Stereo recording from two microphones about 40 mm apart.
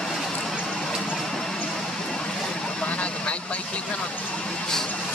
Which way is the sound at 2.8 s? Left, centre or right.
Left.